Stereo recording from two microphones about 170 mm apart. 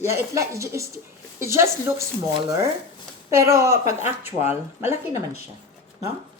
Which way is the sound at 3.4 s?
15° right (ahead or behind).